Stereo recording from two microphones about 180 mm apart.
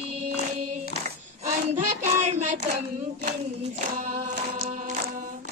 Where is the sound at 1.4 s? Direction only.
40° right (ahead or behind).